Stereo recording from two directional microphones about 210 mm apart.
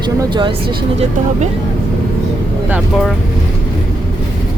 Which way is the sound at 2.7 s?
Centre (ahead or behind).